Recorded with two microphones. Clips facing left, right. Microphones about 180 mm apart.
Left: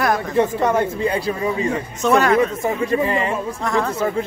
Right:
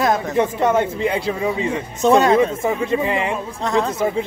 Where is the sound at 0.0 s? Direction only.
20° right (ahead or behind).